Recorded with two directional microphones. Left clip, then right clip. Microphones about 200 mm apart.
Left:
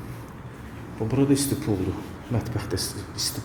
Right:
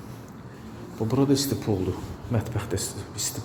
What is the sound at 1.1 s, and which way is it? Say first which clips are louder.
A man's voice: left 1 dB; 20° right (ahead or behind).